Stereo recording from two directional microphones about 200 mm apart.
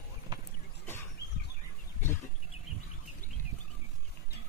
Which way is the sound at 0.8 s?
10° left (ahead or behind).